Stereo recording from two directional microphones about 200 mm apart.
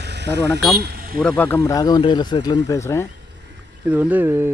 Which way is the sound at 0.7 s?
45° right (ahead or behind).